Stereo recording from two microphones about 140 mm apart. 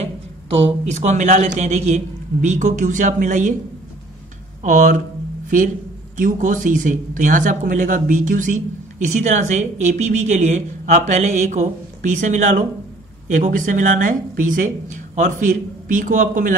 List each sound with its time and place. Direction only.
0.7 s speech: 55° right (ahead or behind)
4.6 s speech: 60° right (ahead or behind)
6.1 s speech: 65° right (ahead or behind)